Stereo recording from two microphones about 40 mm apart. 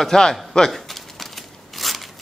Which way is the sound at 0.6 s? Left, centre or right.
Centre.